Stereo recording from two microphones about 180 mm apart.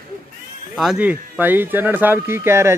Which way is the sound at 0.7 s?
5° right (ahead or behind).